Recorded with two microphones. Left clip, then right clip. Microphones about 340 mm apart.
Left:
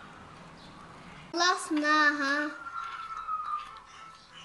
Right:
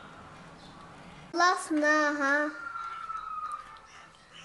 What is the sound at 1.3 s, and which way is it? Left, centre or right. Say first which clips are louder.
Child singing: right 2 dB; centre.